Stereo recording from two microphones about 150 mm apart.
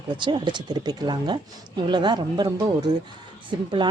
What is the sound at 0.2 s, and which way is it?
A woman's voice, 30° right (ahead or behind).